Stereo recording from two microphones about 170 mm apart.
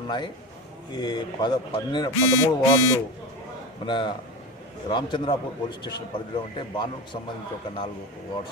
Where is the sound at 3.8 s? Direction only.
25° left (ahead or behind).